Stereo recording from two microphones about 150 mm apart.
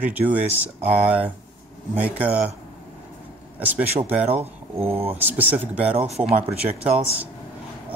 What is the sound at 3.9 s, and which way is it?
Speech, 45° right (ahead or behind).